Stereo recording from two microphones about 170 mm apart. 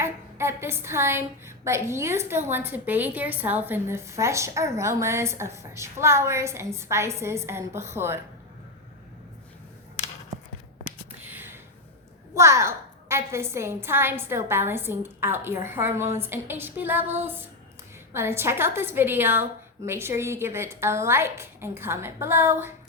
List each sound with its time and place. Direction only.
0.0 s a woman's voice: 15° right (ahead or behind)
11.2 s a sound: 10° right (ahead or behind)
12.3 s a woman's voice: 15° right (ahead or behind)